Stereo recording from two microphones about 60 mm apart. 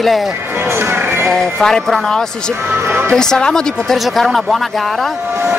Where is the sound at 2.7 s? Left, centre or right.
Right.